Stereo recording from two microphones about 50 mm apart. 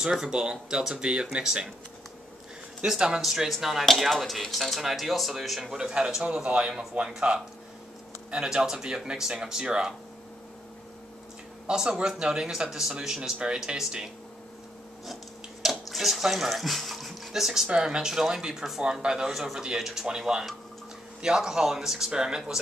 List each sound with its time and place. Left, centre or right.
0.0 s speech: centre
2.9 s speech: centre
11.6 s speech: centre
15.7 s speech: centre